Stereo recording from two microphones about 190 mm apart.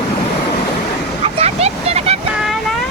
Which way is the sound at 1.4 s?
35° right (ahead or behind).